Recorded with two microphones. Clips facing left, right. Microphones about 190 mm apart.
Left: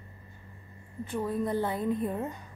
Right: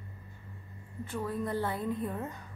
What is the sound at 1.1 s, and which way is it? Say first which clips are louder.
A woman's voice: left 4 dB; 20° left (ahead or behind).